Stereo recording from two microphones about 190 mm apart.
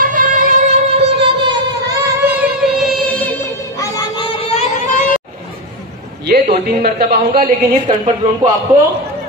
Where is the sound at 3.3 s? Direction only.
20° left (ahead or behind); by 5.1 s 40° left (ahead or behind).